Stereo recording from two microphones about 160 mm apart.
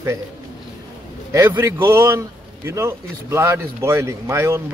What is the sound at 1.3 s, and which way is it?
Speech, 15° right (ahead or behind).